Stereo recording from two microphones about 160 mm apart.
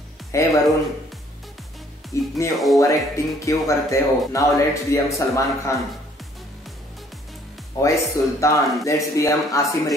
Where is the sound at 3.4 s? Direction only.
20° left (ahead or behind).